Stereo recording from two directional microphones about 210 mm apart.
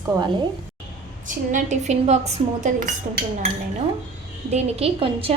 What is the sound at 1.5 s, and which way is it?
Speech, 35° right (ahead or behind).